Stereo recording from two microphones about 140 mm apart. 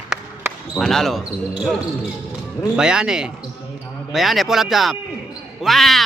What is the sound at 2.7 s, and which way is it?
Speech, 5° right (ahead or behind).